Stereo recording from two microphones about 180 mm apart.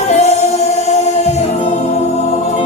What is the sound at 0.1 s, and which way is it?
Music, 40° left (ahead or behind).